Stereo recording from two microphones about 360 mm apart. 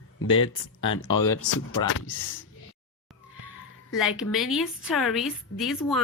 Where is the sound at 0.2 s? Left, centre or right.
Left.